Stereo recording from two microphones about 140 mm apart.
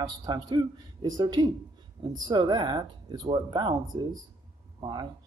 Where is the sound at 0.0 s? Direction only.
30° right (ahead or behind).